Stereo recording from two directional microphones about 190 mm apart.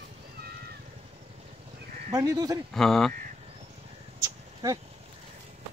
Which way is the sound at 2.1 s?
20° right (ahead or behind).